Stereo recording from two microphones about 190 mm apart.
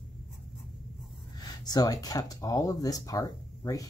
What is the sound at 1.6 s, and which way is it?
Speech, 20° left (ahead or behind).